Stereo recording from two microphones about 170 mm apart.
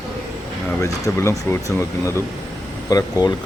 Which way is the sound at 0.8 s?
15° left (ahead or behind).